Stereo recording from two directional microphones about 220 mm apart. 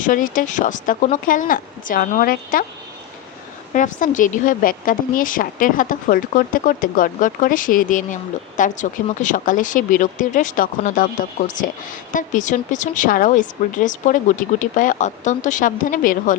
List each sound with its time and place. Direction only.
0.0 s a woman's voice: 40° left (ahead or behind)
3.8 s a woman's voice: 35° left (ahead or behind)